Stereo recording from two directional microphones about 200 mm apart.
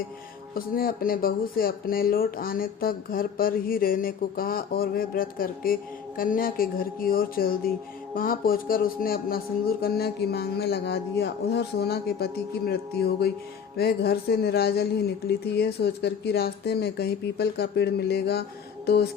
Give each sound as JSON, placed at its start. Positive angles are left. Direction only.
{"t": 0.5, "sound": "speech", "side_deg": 45}